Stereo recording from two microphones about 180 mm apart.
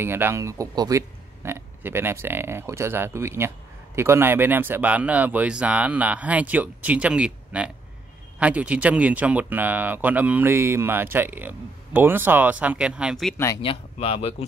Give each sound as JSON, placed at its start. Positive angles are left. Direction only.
{"t": 0.0, "sound": "a man's voice", "side_deg": -15}
{"t": 13.6, "sound": "speech", "side_deg": 30}